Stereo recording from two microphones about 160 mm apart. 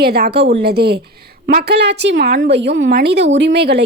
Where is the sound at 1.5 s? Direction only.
80° right.